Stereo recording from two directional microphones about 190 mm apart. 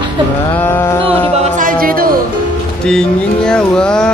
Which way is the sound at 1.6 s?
50° right (ahead or behind).